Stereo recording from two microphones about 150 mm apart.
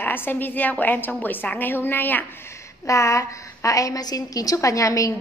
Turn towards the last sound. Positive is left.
turn(degrees=20)  # may be behind; listen again after turning